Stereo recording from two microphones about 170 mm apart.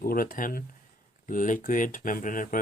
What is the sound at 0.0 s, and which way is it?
Speech, 60° left (ahead or behind).